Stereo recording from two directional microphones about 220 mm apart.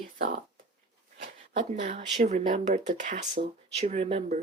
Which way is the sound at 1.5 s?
35° right (ahead or behind).